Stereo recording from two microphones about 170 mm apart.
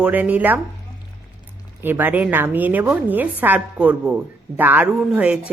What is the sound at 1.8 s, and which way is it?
A woman's voice, 10° right (ahead or behind).